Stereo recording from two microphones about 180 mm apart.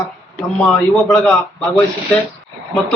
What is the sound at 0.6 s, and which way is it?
A man's voice, centre (ahead or behind).